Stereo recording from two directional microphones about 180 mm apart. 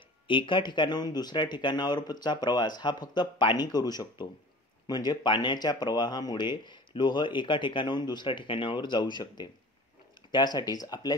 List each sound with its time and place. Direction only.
0.3 s speech: 25° left (ahead or behind)